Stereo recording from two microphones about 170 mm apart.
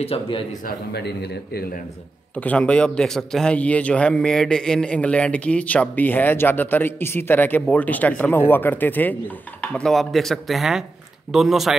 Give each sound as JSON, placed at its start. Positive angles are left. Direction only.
{"t": 0.0, "sound": "a man's voice", "side_deg": 35}
{"t": 0.7, "sound": "a man's voice", "side_deg": 75}
{"t": 2.3, "sound": "a man's voice", "side_deg": 10}